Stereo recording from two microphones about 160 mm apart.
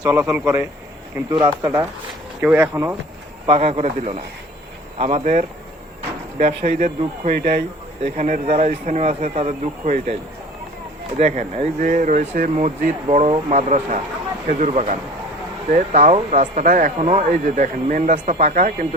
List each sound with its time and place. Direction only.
0.0 s a man's voice: 15° right (ahead or behind)
1.3 s a man's voice: 30° right (ahead or behind)
2.4 s a man's voice: 10° right (ahead or behind)
3.4 s a man's voice: 40° right (ahead or behind)
11.2 s speech: 45° right (ahead or behind)
17.0 s speech: 45° right (ahead or behind)